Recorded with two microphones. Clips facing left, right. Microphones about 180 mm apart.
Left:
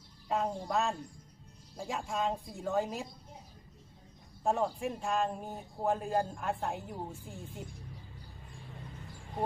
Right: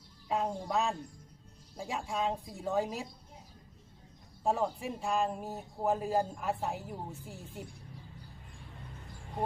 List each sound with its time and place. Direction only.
0.3 s speech: centre (ahead or behind)
4.4 s speech: centre (ahead or behind)